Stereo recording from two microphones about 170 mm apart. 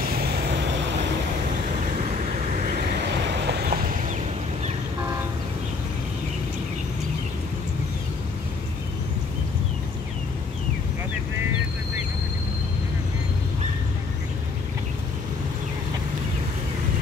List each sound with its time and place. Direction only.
0.0 s vehicle: 65° right (ahead or behind); by 0.7 s 80° right
2.0 s vehicle: 45° right (ahead or behind)
2.9 s vehicle: 85° right; by 4.1 s 55° right (ahead or behind)